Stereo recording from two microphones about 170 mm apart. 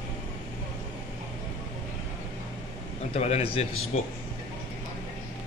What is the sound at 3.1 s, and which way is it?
Speech, 35° left (ahead or behind).